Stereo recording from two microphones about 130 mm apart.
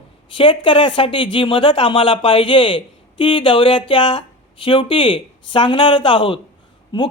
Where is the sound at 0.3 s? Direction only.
40° left (ahead or behind).